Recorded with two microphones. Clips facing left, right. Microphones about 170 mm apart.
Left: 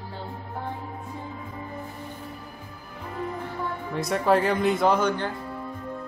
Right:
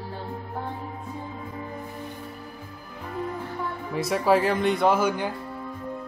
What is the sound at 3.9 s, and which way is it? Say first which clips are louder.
Speech: right 1 dB; 5° right (ahead or behind).